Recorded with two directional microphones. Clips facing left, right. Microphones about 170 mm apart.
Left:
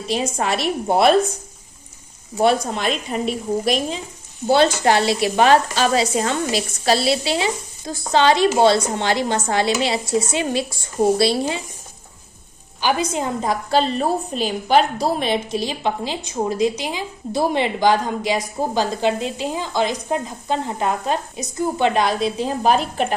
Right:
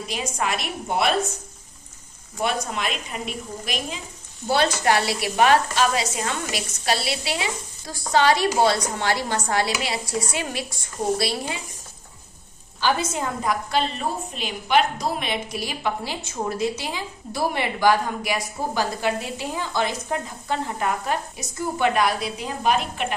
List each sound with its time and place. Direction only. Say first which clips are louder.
0.1 s speech: left 6 dB; 30° left (ahead or behind)
2.4 s a woman's voice: left 8 dB; 35° left (ahead or behind)
12.8 s a woman's voice: left 3 dB; 15° left (ahead or behind); by 23.1 s 35° left (ahead or behind)